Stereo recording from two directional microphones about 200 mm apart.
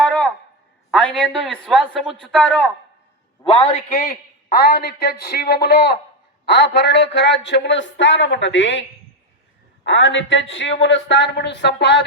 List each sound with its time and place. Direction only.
0.0 s a sound: 5° left (ahead or behind)
0.9 s a man's voice: 5° left (ahead or behind)
3.4 s a man's voice: 25° left (ahead or behind)
3.8 s a man's voice: 45° left (ahead or behind); by 8.8 s 65° left (ahead or behind)
9.8 s a man's voice: 70° left (ahead or behind)